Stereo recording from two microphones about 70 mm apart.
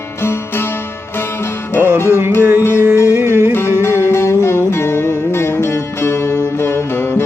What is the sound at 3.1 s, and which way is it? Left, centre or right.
Music, right.